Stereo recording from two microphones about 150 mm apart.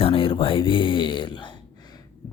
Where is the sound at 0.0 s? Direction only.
35° left (ahead or behind).